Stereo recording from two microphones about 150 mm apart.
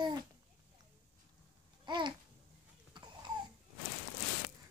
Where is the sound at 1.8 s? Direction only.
30° right (ahead or behind).